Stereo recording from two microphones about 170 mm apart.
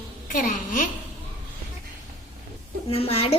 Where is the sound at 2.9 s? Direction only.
35° left (ahead or behind).